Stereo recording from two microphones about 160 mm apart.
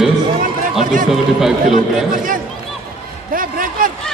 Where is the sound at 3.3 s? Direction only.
60° right (ahead or behind).